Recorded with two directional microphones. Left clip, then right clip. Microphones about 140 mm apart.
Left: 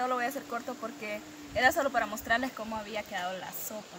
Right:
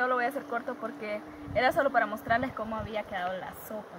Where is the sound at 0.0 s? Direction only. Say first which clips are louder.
Right 3 dB; 5° left (ahead or behind).